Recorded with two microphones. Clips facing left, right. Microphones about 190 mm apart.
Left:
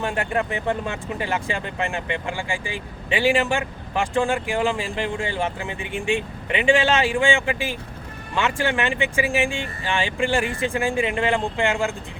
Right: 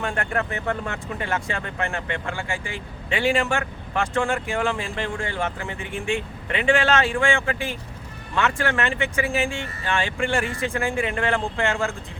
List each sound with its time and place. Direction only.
0.0 s speech: 15° left (ahead or behind)